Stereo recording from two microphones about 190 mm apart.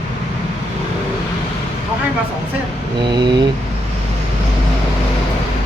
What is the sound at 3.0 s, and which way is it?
Speech, 25° right (ahead or behind).